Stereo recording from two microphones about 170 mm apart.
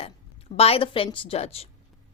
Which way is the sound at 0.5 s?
35° left (ahead or behind).